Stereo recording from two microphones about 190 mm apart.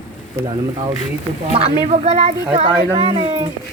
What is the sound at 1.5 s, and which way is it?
Speech, 30° right (ahead or behind).